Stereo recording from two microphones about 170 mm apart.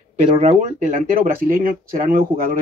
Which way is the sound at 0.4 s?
45° right (ahead or behind).